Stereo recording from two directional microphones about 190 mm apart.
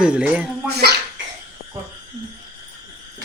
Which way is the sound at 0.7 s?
60° right (ahead or behind).